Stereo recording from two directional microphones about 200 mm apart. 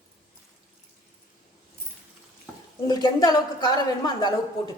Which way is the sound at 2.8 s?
20° left (ahead or behind).